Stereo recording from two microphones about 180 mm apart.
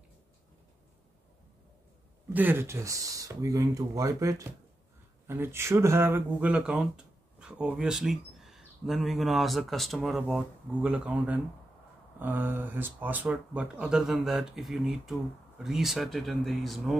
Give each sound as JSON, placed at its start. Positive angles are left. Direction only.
{"t": 2.2, "sound": "speech", "side_deg": -10}